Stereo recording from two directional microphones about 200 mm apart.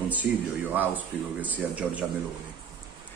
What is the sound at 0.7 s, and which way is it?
Speech, 10° right (ahead or behind).